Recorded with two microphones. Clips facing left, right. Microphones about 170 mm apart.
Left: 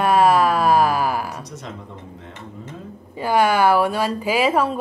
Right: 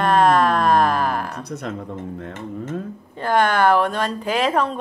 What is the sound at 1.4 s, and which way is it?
Speech, 60° right (ahead or behind).